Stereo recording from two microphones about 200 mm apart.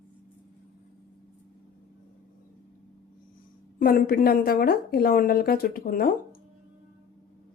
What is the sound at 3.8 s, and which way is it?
A woman's voice, 45° left (ahead or behind).